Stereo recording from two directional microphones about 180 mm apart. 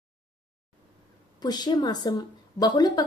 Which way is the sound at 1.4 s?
20° left (ahead or behind).